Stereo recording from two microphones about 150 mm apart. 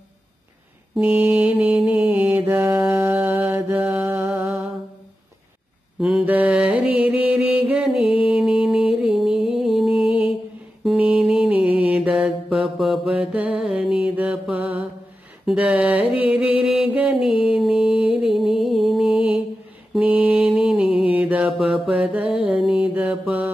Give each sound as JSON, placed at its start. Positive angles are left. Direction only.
{"t": 0.9, "sound": "mantra", "side_deg": -10}
{"t": 5.9, "sound": "mantra", "side_deg": -5}
{"t": 8.2, "sound": "music", "side_deg": -5}
{"t": 10.8, "sound": "mantra", "side_deg": -5}
{"t": 15.4, "sound": "a sound", "side_deg": -10}
{"t": 16.0, "sound": "music", "side_deg": 40}
{"t": 16.6, "sound": "music", "side_deg": -5}
{"t": 17.9, "sound": "music", "side_deg": 40}
{"t": 18.2, "sound": "music", "side_deg": 0}
{"t": 19.9, "sound": "mantra", "side_deg": -5}